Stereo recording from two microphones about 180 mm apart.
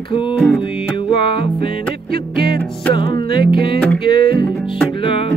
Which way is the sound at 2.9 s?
25° left (ahead or behind).